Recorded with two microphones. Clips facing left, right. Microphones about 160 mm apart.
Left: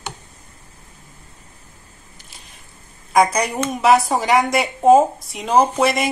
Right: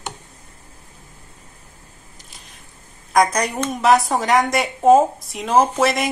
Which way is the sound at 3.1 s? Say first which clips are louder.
Left 1 dB; 5° left (ahead or behind).